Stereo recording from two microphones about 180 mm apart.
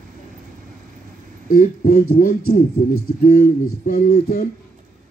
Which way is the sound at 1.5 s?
50° left (ahead or behind).